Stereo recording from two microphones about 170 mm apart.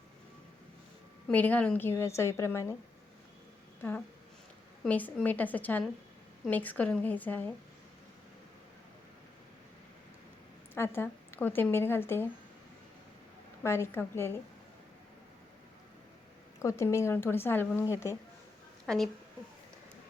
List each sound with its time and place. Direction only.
1.3 s a woman's voice: 10° left (ahead or behind)
4.8 s a woman's voice: 10° left (ahead or behind)
10.8 s a woman's voice: 15° left (ahead or behind)
13.6 s a woman's voice: 15° left (ahead or behind)
16.6 s a woman's voice: 15° left (ahead or behind)
18.9 s a woman's voice: centre (ahead or behind)